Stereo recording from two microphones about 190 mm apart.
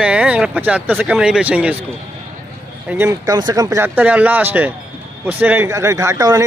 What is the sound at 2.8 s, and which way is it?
Speech, 10° right (ahead or behind).